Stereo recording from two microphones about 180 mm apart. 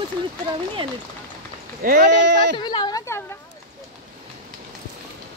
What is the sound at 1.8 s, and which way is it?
Speech, 50° right (ahead or behind).